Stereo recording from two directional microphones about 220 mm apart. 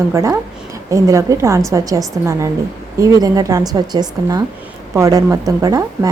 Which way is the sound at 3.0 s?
15° right (ahead or behind).